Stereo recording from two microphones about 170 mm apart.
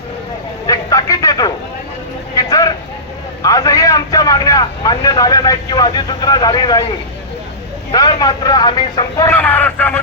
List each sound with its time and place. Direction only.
0.7 s a sound: 20° left (ahead or behind)
3.4 s vehicle: 20° left (ahead or behind)
8.2 s speech: 25° left (ahead or behind)
9.3 s a man's voice: 10° left (ahead or behind)